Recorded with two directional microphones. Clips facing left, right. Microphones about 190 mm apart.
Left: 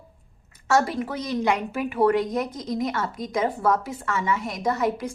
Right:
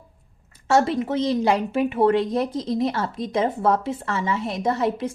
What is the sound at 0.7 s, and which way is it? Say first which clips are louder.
A woman's voice: right 3 dB; 25° right (ahead or behind).